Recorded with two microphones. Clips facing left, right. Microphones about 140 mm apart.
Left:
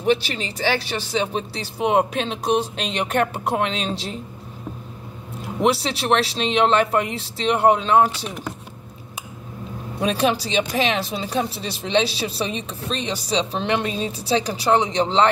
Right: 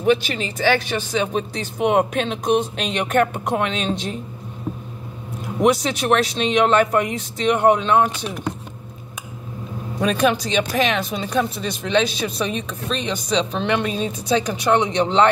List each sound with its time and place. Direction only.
0.0 s speech: 35° left (ahead or behind)
5.6 s speech: 30° left (ahead or behind)
9.9 s speech: 30° left (ahead or behind)
13.8 s a woman's voice: 40° right (ahead or behind)
14.1 s speech: 35° left (ahead or behind)